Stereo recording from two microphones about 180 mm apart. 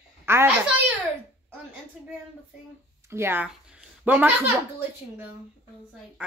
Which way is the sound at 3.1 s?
15° right (ahead or behind).